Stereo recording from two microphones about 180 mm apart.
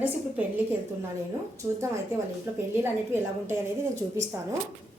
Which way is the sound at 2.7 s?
10° right (ahead or behind).